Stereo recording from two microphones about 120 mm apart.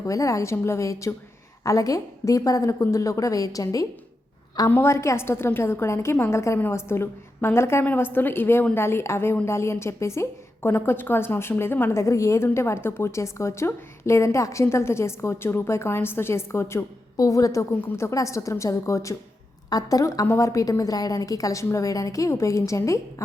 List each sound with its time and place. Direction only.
0.0 s a woman's voice: 25° left (ahead or behind)